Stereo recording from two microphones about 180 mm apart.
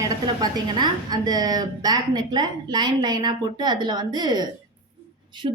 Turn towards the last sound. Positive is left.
turn(degrees=-25)  # may be behind; listen again after turning